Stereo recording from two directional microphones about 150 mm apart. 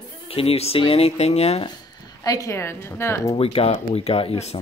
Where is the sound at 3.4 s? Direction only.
40° left (ahead or behind).